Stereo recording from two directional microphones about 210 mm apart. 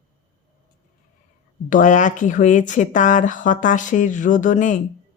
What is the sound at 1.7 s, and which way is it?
Speech, 40° left (ahead or behind).